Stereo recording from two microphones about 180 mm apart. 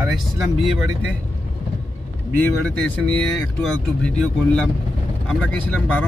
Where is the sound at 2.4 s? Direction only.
10° left (ahead or behind).